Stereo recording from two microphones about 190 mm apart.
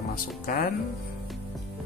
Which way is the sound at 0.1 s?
50° left (ahead or behind).